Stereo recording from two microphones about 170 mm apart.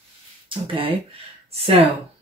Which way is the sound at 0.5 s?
30° right (ahead or behind).